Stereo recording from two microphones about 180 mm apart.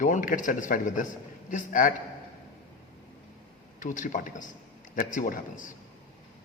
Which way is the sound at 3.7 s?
45° left (ahead or behind).